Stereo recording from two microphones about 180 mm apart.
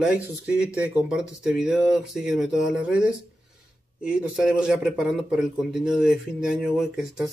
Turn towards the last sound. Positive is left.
turn(degrees=0)  # may be behind; listen again after turning